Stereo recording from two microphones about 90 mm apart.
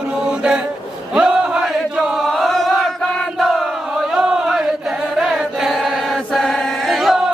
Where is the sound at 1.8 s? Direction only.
5° right (ahead or behind).